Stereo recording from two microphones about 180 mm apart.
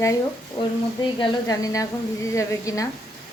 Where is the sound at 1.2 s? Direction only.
20° left (ahead or behind).